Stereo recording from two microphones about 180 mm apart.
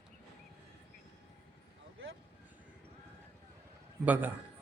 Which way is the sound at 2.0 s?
90° right.